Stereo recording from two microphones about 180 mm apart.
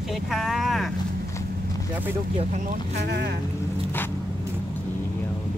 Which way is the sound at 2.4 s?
40° right (ahead or behind).